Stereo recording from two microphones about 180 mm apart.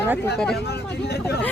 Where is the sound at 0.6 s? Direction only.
65° left (ahead or behind).